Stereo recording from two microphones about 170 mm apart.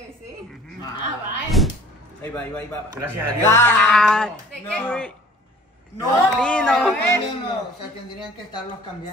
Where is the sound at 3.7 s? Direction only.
5° left (ahead or behind).